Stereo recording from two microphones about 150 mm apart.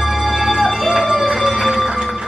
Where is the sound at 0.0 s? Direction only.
Centre (ahead or behind).